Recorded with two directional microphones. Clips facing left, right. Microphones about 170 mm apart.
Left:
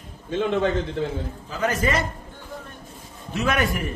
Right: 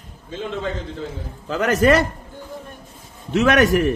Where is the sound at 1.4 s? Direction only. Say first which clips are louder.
Right 8 dB; 75° right (ahead or behind).